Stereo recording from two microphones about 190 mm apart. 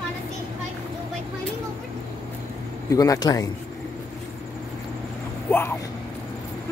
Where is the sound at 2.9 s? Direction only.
20° left (ahead or behind).